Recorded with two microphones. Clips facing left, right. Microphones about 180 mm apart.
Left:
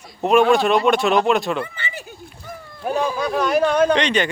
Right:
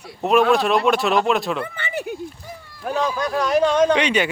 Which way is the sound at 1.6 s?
55° right (ahead or behind).